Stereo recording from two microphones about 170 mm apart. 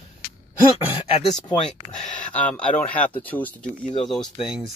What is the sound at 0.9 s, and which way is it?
Speech, 25° left (ahead or behind).